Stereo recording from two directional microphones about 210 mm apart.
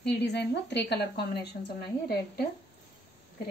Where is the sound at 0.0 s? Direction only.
55° left (ahead or behind).